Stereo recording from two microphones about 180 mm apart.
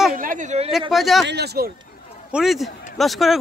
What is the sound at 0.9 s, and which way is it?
Speech, centre (ahead or behind).